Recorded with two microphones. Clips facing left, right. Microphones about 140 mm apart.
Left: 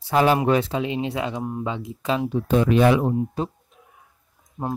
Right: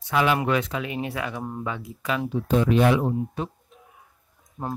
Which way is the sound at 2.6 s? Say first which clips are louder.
Left 2 dB; 75° left (ahead or behind).